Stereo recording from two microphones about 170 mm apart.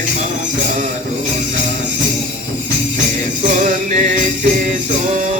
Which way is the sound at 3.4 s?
45° right (ahead or behind).